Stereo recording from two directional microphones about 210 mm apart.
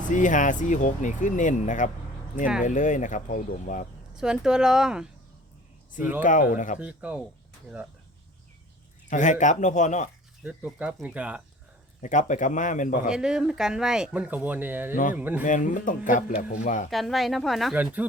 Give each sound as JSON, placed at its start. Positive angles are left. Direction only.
{"t": 0.1, "sound": "speech", "side_deg": 35}
{"t": 4.2, "sound": "speech", "side_deg": -5}
{"t": 6.2, "sound": "speech", "side_deg": 40}
{"t": 6.7, "sound": "speech", "side_deg": -5}
{"t": 9.0, "sound": "speech", "side_deg": 35}
{"t": 10.4, "sound": "speech", "side_deg": -5}
{"t": 12.0, "sound": "speech", "side_deg": 35}
{"t": 13.1, "sound": "speech", "side_deg": -5}
{"t": 15.4, "sound": "speech", "side_deg": 35}
{"t": 16.9, "sound": "speech", "side_deg": 0}